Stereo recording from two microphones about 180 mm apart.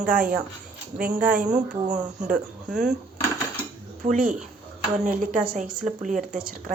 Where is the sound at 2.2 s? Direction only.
5° right (ahead or behind).